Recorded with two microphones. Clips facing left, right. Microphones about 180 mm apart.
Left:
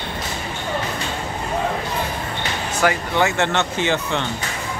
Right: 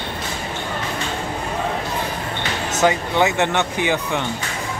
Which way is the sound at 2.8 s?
20° right (ahead or behind).